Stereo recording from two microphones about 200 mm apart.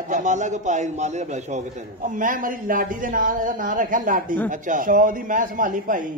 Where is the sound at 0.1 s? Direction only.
35° right (ahead or behind).